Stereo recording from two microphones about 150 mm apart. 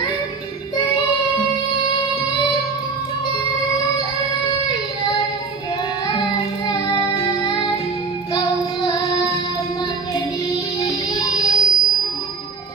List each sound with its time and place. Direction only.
6.7 s child singing: 30° left (ahead or behind)
11.1 s music: 25° left (ahead or behind)